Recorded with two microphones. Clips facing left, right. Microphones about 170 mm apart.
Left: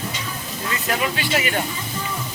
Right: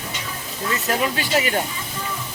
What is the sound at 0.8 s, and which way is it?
Speech, 40° right (ahead or behind).